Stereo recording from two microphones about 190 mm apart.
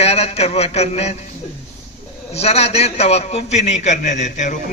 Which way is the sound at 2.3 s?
35° left (ahead or behind).